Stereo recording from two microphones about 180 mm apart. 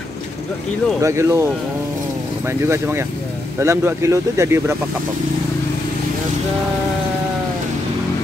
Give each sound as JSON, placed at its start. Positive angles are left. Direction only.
{"t": 1.0, "sound": "speech", "side_deg": -15}